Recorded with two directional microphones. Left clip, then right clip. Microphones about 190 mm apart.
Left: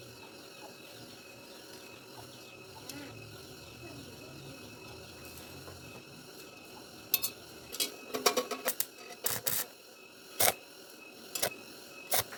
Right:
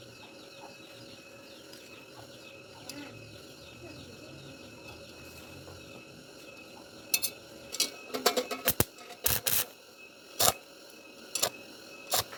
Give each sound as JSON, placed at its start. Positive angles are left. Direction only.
{"t": 7.8, "sound": "tick-tock", "side_deg": 15}
{"t": 8.6, "sound": "music", "side_deg": -30}
{"t": 10.3, "sound": "camera", "side_deg": 0}
{"t": 11.3, "sound": "a sound", "side_deg": 0}
{"t": 12.1, "sound": "scissors", "side_deg": 0}